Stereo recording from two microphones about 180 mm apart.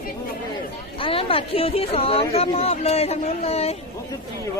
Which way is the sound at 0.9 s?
30° left (ahead or behind).